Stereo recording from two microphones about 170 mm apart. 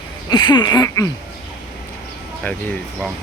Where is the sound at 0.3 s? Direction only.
25° left (ahead or behind).